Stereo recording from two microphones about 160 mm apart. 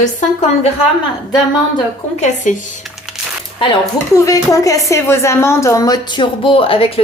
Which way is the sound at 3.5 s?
25° left (ahead or behind).